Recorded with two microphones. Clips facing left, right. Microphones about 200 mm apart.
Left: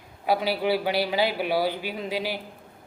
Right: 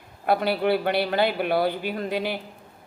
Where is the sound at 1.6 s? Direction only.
55° right (ahead or behind).